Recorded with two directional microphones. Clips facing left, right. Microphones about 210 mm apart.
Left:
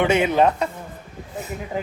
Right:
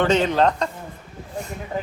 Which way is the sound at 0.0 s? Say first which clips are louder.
Left 1 dB; 10° left (ahead or behind).